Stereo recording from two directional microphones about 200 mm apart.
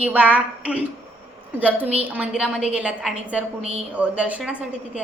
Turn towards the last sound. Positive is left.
turn(degrees=-5)  # may be behind; listen again after turning